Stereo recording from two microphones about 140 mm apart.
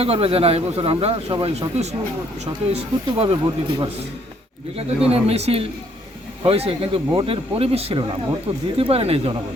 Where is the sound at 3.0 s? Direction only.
40° right (ahead or behind).